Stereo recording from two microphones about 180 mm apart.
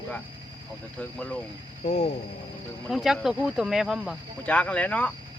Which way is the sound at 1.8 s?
40° left (ahead or behind).